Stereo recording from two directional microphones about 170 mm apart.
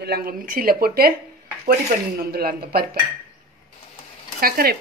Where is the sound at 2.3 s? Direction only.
65° right (ahead or behind).